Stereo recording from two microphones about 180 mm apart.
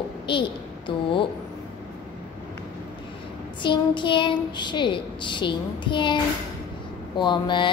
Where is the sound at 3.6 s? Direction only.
25° left (ahead or behind).